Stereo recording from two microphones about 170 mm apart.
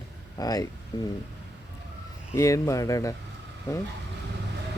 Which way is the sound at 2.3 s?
15° left (ahead or behind).